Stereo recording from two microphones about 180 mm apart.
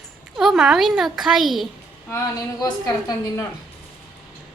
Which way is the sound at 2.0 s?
15° left (ahead or behind).